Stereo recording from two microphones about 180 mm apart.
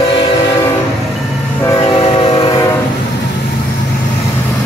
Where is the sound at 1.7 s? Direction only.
20° left (ahead or behind).